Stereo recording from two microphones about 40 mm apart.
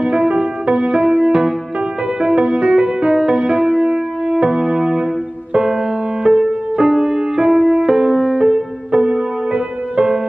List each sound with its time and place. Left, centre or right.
0.0 s music: right
8.4 s music: right